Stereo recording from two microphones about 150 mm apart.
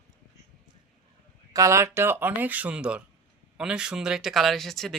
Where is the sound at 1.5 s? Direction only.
20° right (ahead or behind).